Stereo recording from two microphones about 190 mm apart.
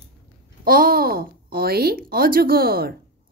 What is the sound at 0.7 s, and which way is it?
A child's voice, 50° right (ahead or behind).